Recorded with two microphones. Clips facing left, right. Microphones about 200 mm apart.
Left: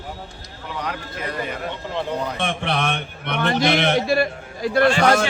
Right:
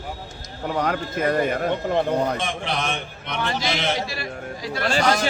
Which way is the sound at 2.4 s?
60° left (ahead or behind).